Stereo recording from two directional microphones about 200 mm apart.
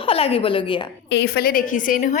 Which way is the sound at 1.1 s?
60° left (ahead or behind).